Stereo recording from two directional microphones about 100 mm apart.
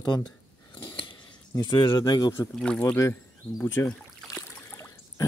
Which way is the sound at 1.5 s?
50° left (ahead or behind).